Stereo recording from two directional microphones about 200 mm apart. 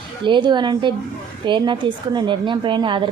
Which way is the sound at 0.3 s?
25° right (ahead or behind).